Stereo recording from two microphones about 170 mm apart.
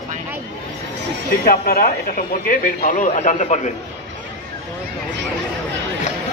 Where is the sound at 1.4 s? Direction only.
60° left (ahead or behind).